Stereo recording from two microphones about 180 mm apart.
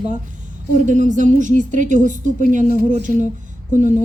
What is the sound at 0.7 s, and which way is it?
A woman's voice, 45° right (ahead or behind).